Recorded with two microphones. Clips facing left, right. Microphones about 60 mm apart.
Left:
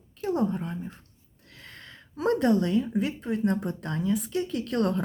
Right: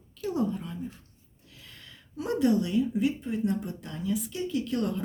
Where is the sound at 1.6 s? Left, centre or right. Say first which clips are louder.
Left 5 dB; left.